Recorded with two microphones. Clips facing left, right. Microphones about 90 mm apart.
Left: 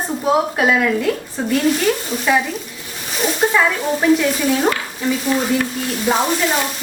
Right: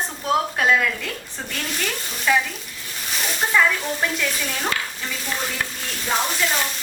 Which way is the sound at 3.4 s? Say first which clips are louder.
Left 5 dB; 15° left (ahead or behind).